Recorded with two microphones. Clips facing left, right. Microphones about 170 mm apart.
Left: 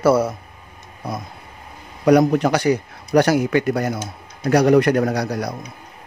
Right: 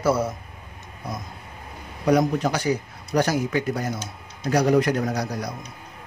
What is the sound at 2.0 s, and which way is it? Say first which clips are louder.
A man's voice: left 6 dB; 70° left (ahead or behind).